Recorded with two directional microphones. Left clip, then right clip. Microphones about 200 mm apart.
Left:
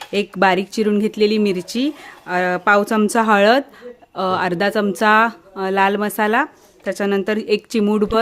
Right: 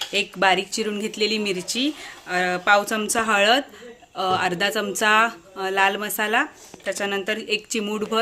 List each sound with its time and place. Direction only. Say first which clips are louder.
0.1 s speech: left 4 dB; 55° left (ahead or behind)